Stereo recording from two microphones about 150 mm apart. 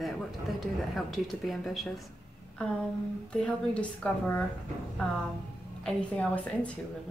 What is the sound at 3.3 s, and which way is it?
A woman's voice, 5° left (ahead or behind).